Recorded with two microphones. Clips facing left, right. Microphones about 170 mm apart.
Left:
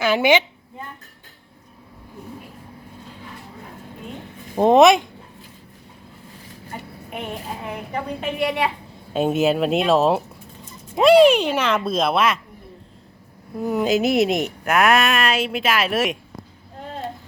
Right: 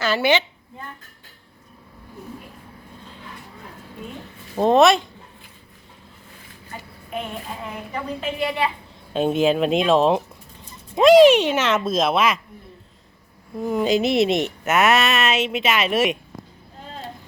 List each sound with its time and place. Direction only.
0.0 s a woman's voice: 15° left (ahead or behind)
4.2 s a sound: 15° left (ahead or behind)
8.2 s a woman's voice: 65° left (ahead or behind)
9.1 s a woman's voice: 5° left (ahead or behind)
13.6 s a woman's voice: 10° left (ahead or behind)